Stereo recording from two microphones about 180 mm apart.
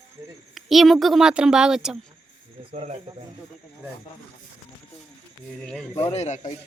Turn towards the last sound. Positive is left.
turn(degrees=40)  # may be behind; listen again after turning